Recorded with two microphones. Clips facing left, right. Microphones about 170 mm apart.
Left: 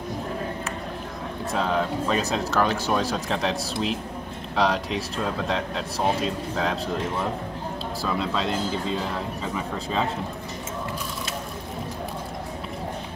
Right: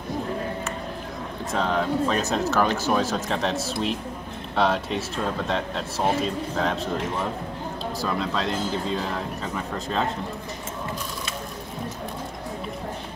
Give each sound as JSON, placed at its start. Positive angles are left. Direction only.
{"t": 1.5, "sound": "speech", "side_deg": 0}